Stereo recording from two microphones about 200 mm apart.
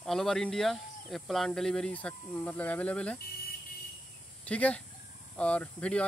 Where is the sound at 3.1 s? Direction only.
50° left (ahead or behind).